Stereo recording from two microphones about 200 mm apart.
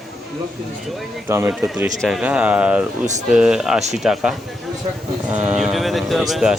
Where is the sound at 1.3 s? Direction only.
10° right (ahead or behind).